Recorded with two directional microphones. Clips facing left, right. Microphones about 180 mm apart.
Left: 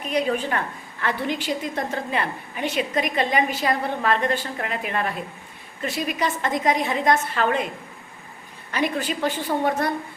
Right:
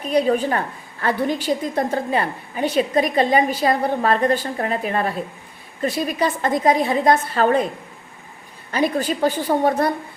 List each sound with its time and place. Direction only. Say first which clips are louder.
0.0 s a woman's voice: right 5 dB; 35° right (ahead or behind)
8.7 s a woman's voice: right 4 dB; 35° right (ahead or behind)